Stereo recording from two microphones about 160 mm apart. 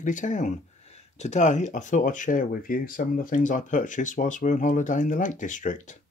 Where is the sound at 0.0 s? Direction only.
55° left (ahead or behind).